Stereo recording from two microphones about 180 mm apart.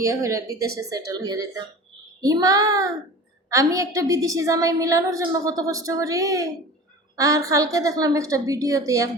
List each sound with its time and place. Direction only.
0.0 s a woman's voice: 15° right (ahead or behind)